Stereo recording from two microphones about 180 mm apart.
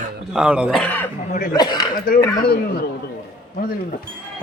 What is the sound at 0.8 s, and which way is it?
Speech, 10° left (ahead or behind).